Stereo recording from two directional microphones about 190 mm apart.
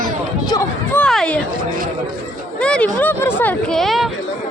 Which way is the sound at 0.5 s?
15° left (ahead or behind).